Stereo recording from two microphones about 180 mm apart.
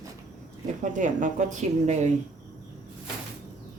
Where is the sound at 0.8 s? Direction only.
45° right (ahead or behind).